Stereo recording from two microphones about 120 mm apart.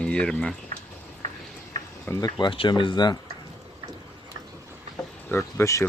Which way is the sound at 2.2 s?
40° left (ahead or behind).